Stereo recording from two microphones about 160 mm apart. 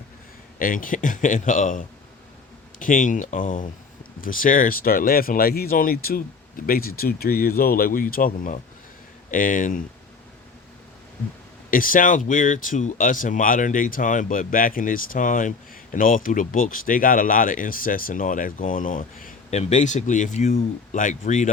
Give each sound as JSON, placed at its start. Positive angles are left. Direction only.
{"t": 0.6, "sound": "speech", "side_deg": 60}
{"t": 11.7, "sound": "speech", "side_deg": 60}